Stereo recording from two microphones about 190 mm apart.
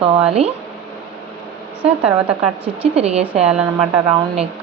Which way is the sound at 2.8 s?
30° right (ahead or behind).